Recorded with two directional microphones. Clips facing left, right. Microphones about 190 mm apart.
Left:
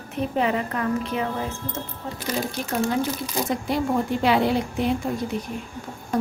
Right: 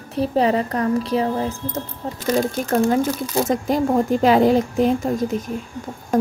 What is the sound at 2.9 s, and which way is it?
Speech, 45° right (ahead or behind).